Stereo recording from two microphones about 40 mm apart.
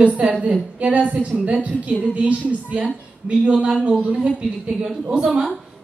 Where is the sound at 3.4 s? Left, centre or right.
Right.